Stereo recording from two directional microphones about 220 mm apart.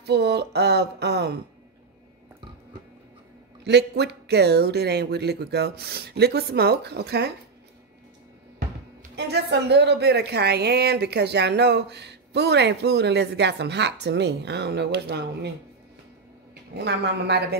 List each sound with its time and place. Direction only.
0.0 s a woman's voice: 50° right (ahead or behind)
3.6 s a woman's voice: 50° right (ahead or behind)
9.1 s a woman's voice: 50° right (ahead or behind)
16.7 s a woman's voice: 50° right (ahead or behind)